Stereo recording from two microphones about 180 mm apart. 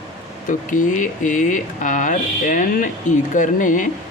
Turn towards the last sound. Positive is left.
turn(degrees=45)  # may be behind; listen again after turning